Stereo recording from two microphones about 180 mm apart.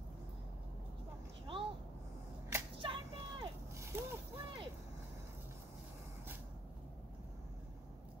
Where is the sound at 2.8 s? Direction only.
30° right (ahead or behind).